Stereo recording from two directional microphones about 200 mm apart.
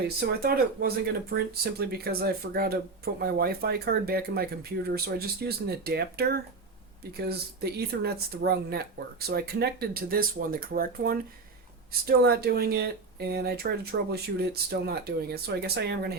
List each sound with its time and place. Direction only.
0.2 s speech: 50° right (ahead or behind)